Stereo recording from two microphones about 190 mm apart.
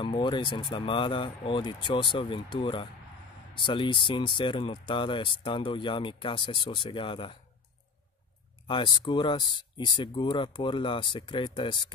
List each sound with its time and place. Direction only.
0.0 s speech: 25° left (ahead or behind)
8.6 s speech: 25° left (ahead or behind)